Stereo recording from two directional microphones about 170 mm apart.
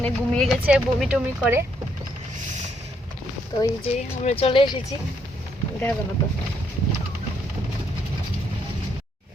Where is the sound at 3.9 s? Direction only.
40° left (ahead or behind).